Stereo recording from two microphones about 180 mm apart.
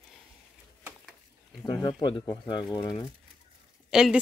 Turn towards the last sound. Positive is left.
turn(degrees=-5)  # may be behind; listen again after turning